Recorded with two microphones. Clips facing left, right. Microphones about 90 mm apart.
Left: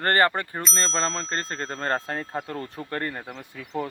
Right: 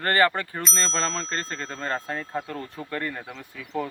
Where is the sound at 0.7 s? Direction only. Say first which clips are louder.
Left 1 dB; 35° left (ahead or behind).